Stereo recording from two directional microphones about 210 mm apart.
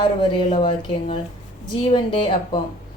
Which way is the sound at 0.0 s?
25° left (ahead or behind).